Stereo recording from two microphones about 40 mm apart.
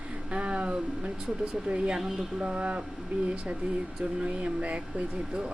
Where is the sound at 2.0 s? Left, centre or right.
Centre.